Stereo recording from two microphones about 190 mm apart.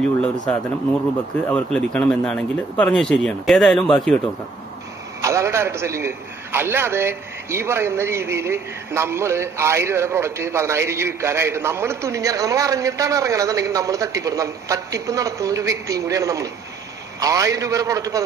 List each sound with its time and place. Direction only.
0.5 s a man's voice: 5° left (ahead or behind)
5.2 s a man's voice: 15° right (ahead or behind)